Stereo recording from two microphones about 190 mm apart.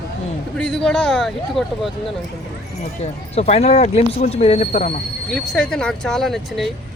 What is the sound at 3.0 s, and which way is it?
Speech, 35° left (ahead or behind).